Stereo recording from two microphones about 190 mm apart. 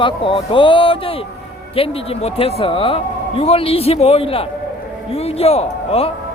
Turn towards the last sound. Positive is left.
turn(degrees=30)  # may be behind; listen again after turning